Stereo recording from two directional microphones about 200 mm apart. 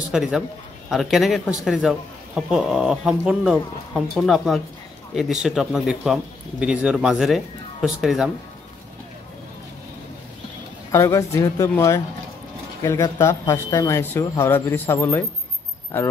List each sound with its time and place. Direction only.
0.1 s a man's voice: 5° right (ahead or behind)
10.9 s speech: 15° left (ahead or behind)